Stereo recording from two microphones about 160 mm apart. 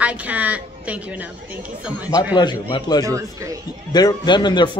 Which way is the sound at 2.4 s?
30° left (ahead or behind).